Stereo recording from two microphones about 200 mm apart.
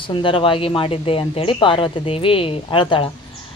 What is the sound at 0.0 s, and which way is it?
Speech, 25° left (ahead or behind).